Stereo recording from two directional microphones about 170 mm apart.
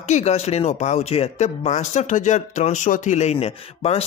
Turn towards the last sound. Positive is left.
turn(degrees=35)  # may be behind; listen again after turning